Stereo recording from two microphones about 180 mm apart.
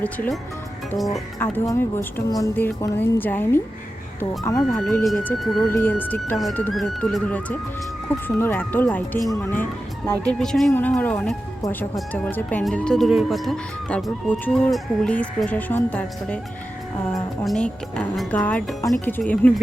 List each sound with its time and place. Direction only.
0.0 s speech: 10° left (ahead or behind)
1.4 s speech: 15° left (ahead or behind)
4.8 s speech: 5° left (ahead or behind)
5.6 s speech: 15° left (ahead or behind)
17.4 s speech: 5° left (ahead or behind)